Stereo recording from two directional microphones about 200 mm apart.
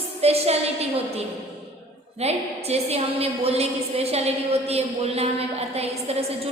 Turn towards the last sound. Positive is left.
turn(degrees=-30)  # may be behind; listen again after turning